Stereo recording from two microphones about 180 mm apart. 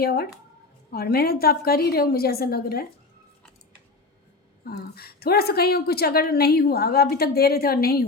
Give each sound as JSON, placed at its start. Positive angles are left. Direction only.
{"t": 0.0, "sound": "a woman's voice", "side_deg": 60}
{"t": 4.6, "sound": "a woman's voice", "side_deg": 60}